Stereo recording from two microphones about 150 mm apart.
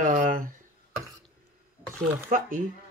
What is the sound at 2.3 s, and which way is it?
Speech, 65° right (ahead or behind).